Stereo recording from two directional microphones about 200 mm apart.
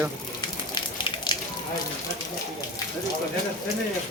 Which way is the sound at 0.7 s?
20° left (ahead or behind).